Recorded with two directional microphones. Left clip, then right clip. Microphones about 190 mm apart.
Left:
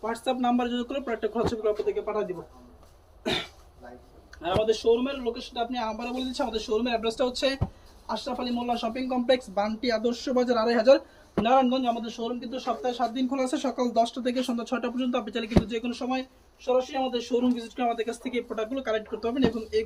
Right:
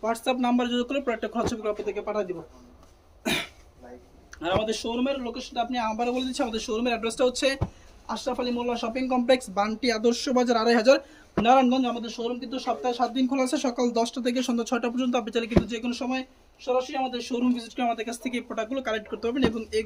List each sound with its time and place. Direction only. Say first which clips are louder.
0.0 s speech: right 1 dB; 50° right (ahead or behind)
4.4 s speech: left 1 dB; 60° right (ahead or behind)
12.0 s speech: right 2 dB; 35° right (ahead or behind)
16.6 s speech: left 1 dB; 30° right (ahead or behind); by 19.4 s 65° right (ahead or behind)